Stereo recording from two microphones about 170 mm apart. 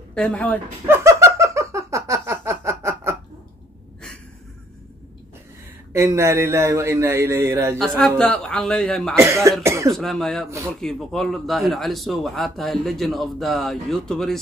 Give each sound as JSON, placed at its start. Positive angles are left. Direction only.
{"t": 0.1, "sound": "speech", "side_deg": 5}
{"t": 0.8, "sound": "a sound", "side_deg": -15}
{"t": 5.9, "sound": "speech", "side_deg": -15}
{"t": 7.8, "sound": "speech", "side_deg": 5}
{"t": 9.1, "sound": "speech", "side_deg": -15}
{"t": 9.9, "sound": "speech", "side_deg": 0}